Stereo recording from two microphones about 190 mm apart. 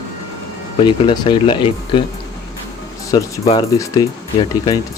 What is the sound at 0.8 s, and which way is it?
Speech, 25° left (ahead or behind).